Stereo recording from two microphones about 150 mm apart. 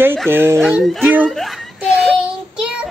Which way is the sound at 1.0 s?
10° right (ahead or behind).